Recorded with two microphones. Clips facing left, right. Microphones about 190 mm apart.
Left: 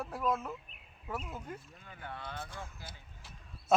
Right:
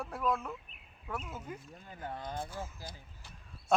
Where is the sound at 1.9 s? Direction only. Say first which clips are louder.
Right 3 dB; 35° right (ahead or behind).